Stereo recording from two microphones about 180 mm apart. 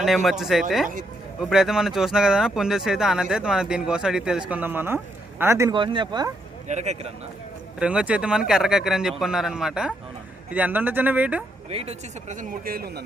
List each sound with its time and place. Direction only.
0.0 s speech: centre (ahead or behind)
5.7 s speech: 25° right (ahead or behind)
6.7 s speech: 40° right (ahead or behind)
7.8 s speech: 5° right (ahead or behind)
11.7 s speech: 35° right (ahead or behind); by 13.0 s 60° right (ahead or behind)